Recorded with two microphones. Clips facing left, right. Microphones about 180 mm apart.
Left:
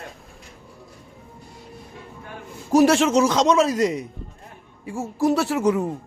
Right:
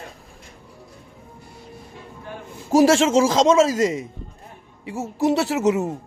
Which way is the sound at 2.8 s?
90° right.